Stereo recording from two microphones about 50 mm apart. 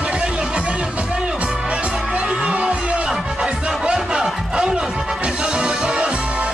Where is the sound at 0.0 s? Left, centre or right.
Right.